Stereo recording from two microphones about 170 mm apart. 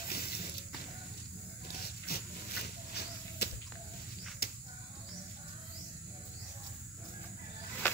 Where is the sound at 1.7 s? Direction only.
65° left (ahead or behind).